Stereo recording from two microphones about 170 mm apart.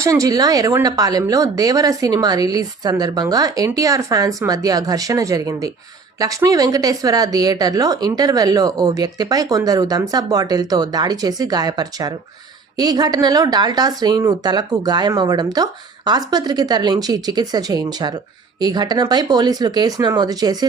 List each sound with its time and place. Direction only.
0.0 s a woman's voice: 20° right (ahead or behind)